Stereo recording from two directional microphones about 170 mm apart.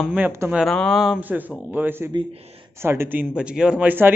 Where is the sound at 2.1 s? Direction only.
30° right (ahead or behind).